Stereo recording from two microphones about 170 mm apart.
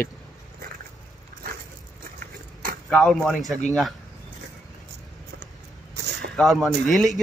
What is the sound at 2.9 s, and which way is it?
Speech, 5° left (ahead or behind).